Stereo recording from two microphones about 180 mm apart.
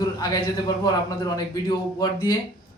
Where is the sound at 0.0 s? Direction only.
20° left (ahead or behind).